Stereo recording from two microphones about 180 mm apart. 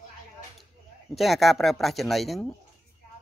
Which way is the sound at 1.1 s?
Centre (ahead or behind).